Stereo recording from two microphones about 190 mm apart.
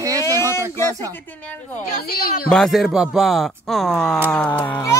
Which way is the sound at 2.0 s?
50° left (ahead or behind).